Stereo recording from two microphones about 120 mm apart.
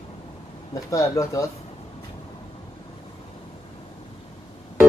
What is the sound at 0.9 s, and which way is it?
Speech, 25° left (ahead or behind).